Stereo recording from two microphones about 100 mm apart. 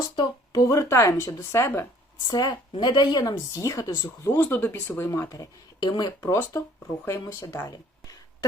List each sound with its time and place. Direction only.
0.2 s speech: 40° left (ahead or behind)
2.2 s speech: 40° left (ahead or behind)
5.8 s speech: 45° left (ahead or behind)
6.2 s speech: 30° left (ahead or behind)
7.7 s a sound: 40° left (ahead or behind)